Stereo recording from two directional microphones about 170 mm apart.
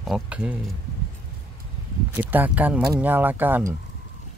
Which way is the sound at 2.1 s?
10° right (ahead or behind).